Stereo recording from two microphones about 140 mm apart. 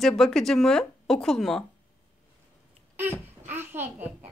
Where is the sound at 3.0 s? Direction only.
15° right (ahead or behind).